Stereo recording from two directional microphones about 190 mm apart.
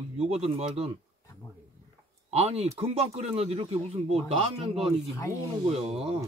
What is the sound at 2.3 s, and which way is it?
Speech, 30° right (ahead or behind).